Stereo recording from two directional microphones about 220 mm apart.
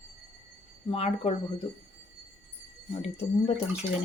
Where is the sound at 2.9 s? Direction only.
30° left (ahead or behind).